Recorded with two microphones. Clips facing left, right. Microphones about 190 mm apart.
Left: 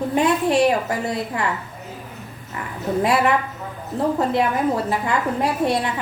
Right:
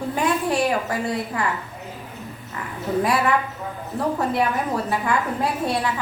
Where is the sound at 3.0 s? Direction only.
25° left (ahead or behind).